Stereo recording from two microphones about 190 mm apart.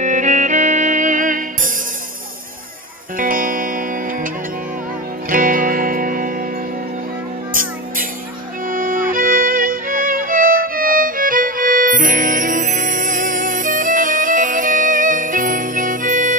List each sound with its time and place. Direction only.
0.0 s music: 40° right (ahead or behind)
3.2 s music: 45° right (ahead or behind)
5.3 s music: 45° right (ahead or behind)
8.6 s music: 45° right (ahead or behind)